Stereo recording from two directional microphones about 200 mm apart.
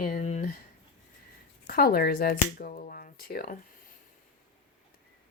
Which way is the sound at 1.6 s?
50° left (ahead or behind).